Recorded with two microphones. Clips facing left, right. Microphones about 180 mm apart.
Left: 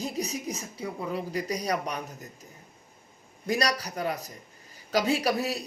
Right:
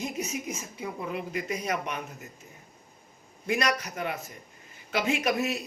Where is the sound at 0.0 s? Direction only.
35° left (ahead or behind).